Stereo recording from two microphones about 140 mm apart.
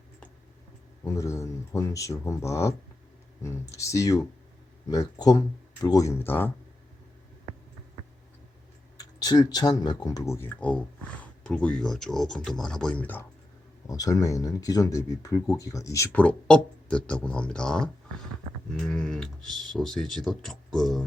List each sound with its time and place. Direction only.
1.0 s speech: 20° left (ahead or behind)
9.0 s speech: 30° left (ahead or behind)
10.6 s speech: 10° left (ahead or behind)
13.8 s speech: 25° left (ahead or behind)
16.1 s speech: 10° left (ahead or behind)